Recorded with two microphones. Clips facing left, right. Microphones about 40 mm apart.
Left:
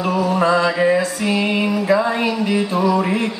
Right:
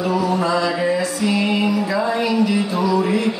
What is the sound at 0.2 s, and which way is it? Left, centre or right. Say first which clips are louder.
Mantra: left 3 dB; left.